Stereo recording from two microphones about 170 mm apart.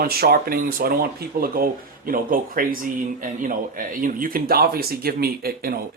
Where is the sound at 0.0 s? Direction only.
60° right (ahead or behind).